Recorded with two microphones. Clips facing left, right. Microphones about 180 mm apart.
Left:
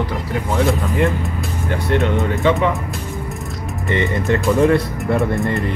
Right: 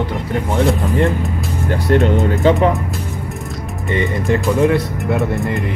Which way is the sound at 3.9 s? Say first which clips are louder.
Right 1 dB; 15° right (ahead or behind).